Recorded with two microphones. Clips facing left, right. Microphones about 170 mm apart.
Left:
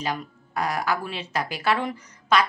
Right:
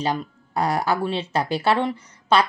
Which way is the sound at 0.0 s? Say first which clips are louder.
Right 5 dB; 30° right (ahead or behind).